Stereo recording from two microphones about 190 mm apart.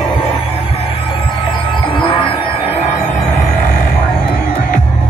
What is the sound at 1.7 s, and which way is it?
Music, 25° left (ahead or behind).